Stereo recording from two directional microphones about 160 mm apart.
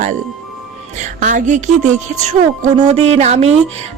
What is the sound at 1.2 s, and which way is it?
A woman's voice, 50° right (ahead or behind).